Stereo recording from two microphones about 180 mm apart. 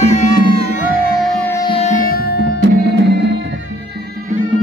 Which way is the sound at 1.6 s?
30° left (ahead or behind).